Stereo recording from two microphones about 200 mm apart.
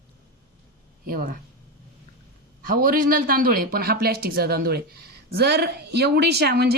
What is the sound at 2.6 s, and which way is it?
Speech, 45° right (ahead or behind).